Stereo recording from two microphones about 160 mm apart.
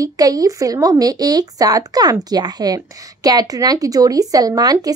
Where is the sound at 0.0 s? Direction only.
20° right (ahead or behind).